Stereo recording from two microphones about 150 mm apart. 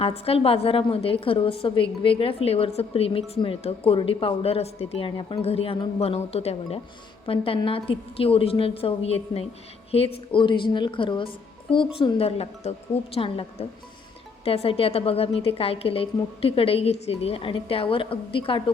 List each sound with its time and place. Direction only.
0.0 s a woman's voice: 40° left (ahead or behind)